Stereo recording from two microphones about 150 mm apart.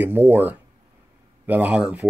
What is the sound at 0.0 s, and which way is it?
Speech, 10° right (ahead or behind).